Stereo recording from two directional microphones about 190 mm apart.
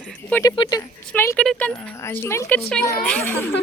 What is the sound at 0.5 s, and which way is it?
Speech, 25° left (ahead or behind).